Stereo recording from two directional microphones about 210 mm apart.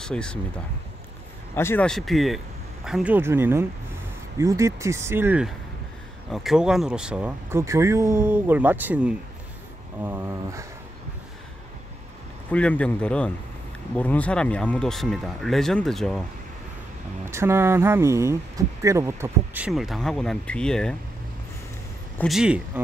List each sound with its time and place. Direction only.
0.0 s speech: 5° left (ahead or behind)
1.5 s speech: 10° left (ahead or behind); by 10.7 s 15° right (ahead or behind)
12.4 s speech: 5° left (ahead or behind)
17.2 s speech: 10° right (ahead or behind); by 20.9 s 5° left (ahead or behind)
22.2 s speech: centre (ahead or behind)